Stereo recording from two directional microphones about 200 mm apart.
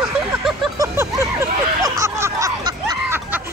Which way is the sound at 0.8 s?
15° right (ahead or behind).